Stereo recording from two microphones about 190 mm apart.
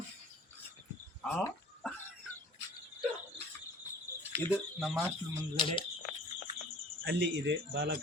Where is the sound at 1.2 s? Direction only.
5° left (ahead or behind).